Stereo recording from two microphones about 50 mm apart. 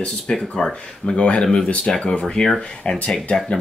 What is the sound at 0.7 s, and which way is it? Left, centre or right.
Speech, left.